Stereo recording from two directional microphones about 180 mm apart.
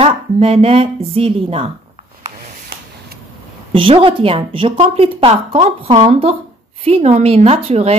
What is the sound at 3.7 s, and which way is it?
A woman's voice, 30° right (ahead or behind).